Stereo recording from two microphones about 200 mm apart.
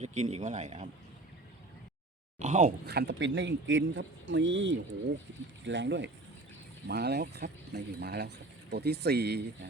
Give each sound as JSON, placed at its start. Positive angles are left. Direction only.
{"t": 0.0, "sound": "speech", "side_deg": -35}
{"t": 2.4, "sound": "speech", "side_deg": -40}
{"t": 2.8, "sound": "speech", "side_deg": -55}